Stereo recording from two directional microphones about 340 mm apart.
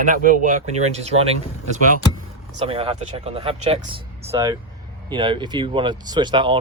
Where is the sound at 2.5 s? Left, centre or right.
Centre.